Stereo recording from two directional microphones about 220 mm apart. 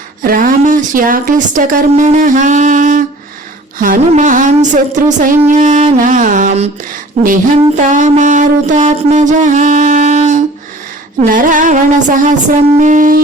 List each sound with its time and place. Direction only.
0.2 s speech: 40° right (ahead or behind)
3.8 s mantra: 40° right (ahead or behind)
7.2 s speech: 30° right (ahead or behind)
7.8 s mantra: 35° right (ahead or behind)